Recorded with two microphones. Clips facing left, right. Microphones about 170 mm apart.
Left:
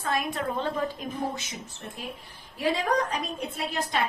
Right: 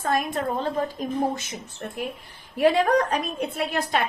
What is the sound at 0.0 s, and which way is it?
A woman's voice, 45° right (ahead or behind).